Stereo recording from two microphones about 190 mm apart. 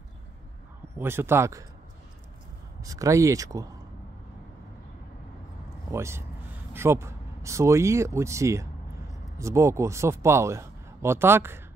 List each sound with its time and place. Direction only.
0.9 s speech: 10° right (ahead or behind)
2.8 s speech: 15° right (ahead or behind)
5.9 s a man's voice: 15° right (ahead or behind)